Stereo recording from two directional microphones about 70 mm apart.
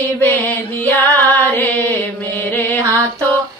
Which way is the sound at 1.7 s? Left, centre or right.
Left.